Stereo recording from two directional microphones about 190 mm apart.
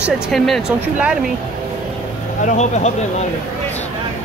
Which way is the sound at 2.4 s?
35° left (ahead or behind).